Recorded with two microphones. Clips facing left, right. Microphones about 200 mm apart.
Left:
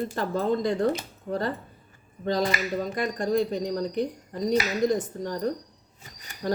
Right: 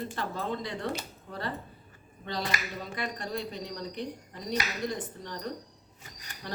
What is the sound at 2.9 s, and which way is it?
Speech, 45° left (ahead or behind).